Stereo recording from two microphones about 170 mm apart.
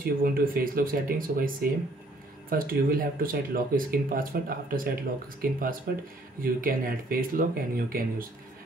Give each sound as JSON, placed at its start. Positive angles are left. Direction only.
{"t": 0.0, "sound": "speech", "side_deg": -60}